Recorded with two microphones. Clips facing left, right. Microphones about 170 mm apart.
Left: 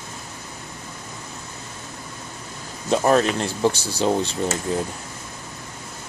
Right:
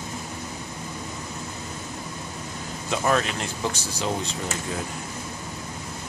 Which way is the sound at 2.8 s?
35° left (ahead or behind).